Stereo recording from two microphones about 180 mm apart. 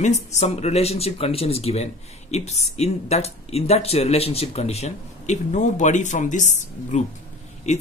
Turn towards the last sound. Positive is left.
turn(degrees=40)  # may be behind; listen again after turning